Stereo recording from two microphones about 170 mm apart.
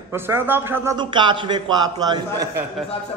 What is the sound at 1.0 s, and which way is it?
A man's voice, 25° right (ahead or behind).